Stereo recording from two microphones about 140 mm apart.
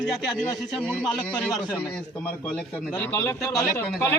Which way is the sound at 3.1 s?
15° left (ahead or behind).